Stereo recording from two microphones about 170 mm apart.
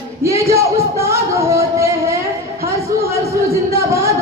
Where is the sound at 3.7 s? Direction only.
15° right (ahead or behind).